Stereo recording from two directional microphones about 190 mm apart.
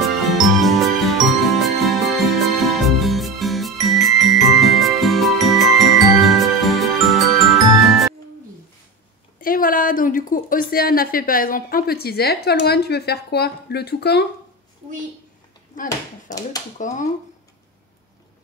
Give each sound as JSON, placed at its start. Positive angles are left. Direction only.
{"t": 0.0, "sound": "jingle", "side_deg": 0}
{"t": 7.8, "sound": "music", "side_deg": 0}
{"t": 9.4, "sound": "a woman's voice", "side_deg": 50}
{"t": 15.7, "sound": "speech", "side_deg": 40}